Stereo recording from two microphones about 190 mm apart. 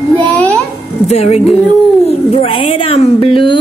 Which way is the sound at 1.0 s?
35° left (ahead or behind).